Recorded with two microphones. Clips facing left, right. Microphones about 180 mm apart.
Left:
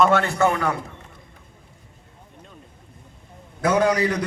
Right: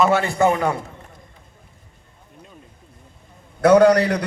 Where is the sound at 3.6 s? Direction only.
65° right (ahead or behind).